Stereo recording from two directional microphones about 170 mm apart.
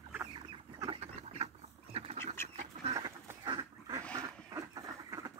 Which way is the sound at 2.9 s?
25° right (ahead or behind).